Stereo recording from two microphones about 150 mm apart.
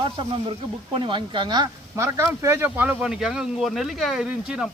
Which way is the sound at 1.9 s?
20° right (ahead or behind).